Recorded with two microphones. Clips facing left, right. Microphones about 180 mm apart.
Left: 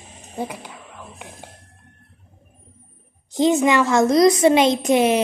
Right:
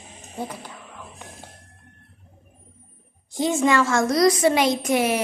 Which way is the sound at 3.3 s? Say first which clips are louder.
Left 4 dB; 20° left (ahead or behind).